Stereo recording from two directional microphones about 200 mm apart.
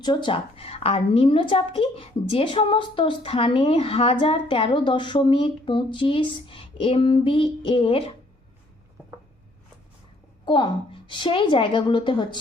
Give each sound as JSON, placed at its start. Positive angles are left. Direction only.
{"t": 0.0, "sound": "a woman's voice", "side_deg": 20}
{"t": 10.4, "sound": "a woman's voice", "side_deg": 20}